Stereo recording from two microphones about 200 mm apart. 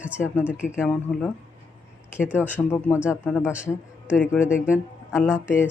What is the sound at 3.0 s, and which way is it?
Speech, centre (ahead or behind).